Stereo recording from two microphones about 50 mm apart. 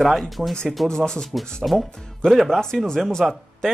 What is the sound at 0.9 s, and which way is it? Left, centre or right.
Speech, centre.